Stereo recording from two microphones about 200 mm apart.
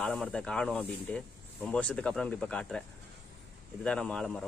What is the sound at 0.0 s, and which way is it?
Speech, 5° left (ahead or behind).